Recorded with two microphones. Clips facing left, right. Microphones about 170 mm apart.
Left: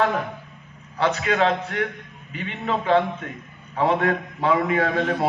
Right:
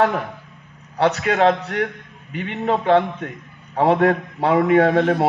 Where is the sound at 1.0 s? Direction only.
45° right (ahead or behind).